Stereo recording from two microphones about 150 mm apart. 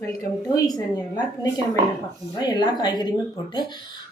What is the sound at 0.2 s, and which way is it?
Speech, 25° left (ahead or behind).